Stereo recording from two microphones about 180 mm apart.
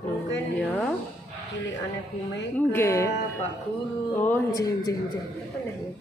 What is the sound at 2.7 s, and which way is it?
Speech, 15° left (ahead or behind).